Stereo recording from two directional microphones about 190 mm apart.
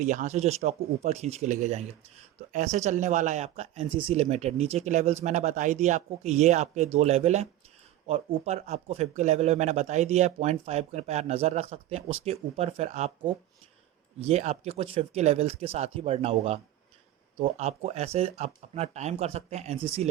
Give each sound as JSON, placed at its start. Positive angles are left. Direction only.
{"t": 0.0, "sound": "a man's voice", "side_deg": -40}
{"t": 8.4, "sound": "a man's voice", "side_deg": -35}
{"t": 14.2, "sound": "a man's voice", "side_deg": -35}